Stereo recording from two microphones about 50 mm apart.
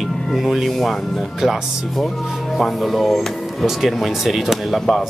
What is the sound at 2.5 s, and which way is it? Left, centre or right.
Speech, centre.